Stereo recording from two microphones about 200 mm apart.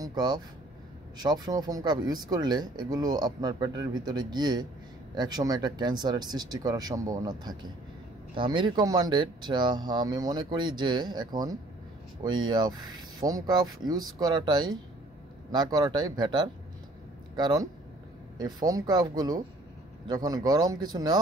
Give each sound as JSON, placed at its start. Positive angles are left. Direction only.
{"t": 0.0, "sound": "speech", "side_deg": -20}